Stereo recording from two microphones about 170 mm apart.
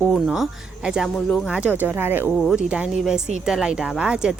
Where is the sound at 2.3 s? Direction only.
Centre (ahead or behind).